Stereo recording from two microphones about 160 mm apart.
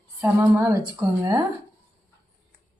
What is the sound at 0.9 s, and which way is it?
Speech, 25° right (ahead or behind).